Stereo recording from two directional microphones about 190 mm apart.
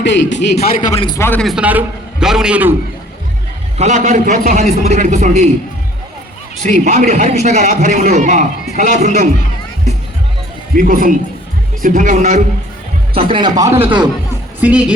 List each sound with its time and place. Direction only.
0.0 s a man's voice: 70° left (ahead or behind); by 1.0 s 40° left (ahead or behind)
1.0 s a man's voice: 15° left (ahead or behind); by 2.7 s 10° right (ahead or behind)
3.8 s a man's voice: 40° right (ahead or behind)
6.6 s a man's voice: 40° right (ahead or behind)
10.8 s a man's voice: 45° right (ahead or behind)
13.1 s a man's voice: 25° right (ahead or behind)
14.6 s speech: 5° right (ahead or behind)